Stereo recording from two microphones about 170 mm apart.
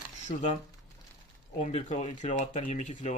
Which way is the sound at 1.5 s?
40° left (ahead or behind).